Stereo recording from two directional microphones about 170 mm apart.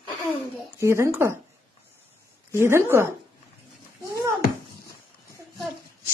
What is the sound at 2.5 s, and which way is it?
Speech, 15° right (ahead or behind).